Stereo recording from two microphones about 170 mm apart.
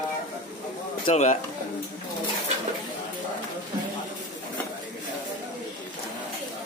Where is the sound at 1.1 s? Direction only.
45° left (ahead or behind).